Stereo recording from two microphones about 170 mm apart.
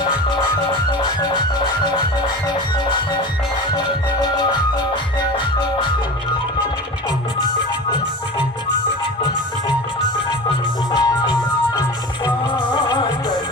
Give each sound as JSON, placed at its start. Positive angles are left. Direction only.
{"t": 1.2, "sound": "music", "side_deg": 25}
{"t": 3.7, "sound": "music", "side_deg": 25}
{"t": 10.9, "sound": "music", "side_deg": 25}